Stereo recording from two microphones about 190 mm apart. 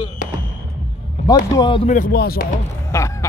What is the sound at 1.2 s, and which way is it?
Speech, 25° left (ahead or behind).